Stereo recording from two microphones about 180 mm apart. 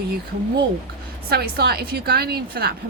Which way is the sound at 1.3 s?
60° right (ahead or behind).